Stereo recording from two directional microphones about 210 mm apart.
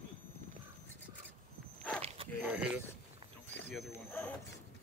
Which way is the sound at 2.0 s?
30° right (ahead or behind).